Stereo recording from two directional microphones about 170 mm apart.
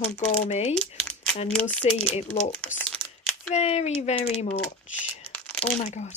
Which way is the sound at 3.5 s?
40° left (ahead or behind).